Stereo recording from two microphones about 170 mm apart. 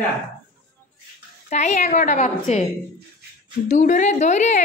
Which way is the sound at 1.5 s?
45° left (ahead or behind).